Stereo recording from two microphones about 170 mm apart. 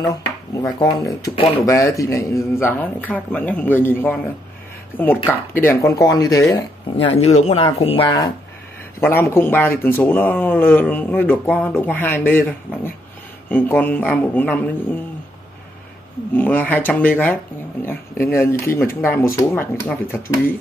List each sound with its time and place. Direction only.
0.0 s speech: 20° left (ahead or behind)
1.3 s speech: 35° left (ahead or behind)
1.7 s speech: 15° left (ahead or behind)
7.1 s speech: 35° left (ahead or behind)
9.0 s speech: 15° left (ahead or behind)
16.3 s speech: 10° left (ahead or behind)